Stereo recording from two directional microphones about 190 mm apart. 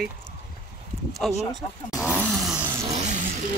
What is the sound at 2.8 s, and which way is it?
Vehicle, 35° right (ahead or behind).